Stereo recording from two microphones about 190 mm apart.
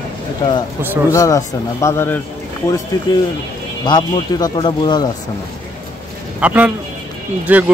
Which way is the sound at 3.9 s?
25° left (ahead or behind).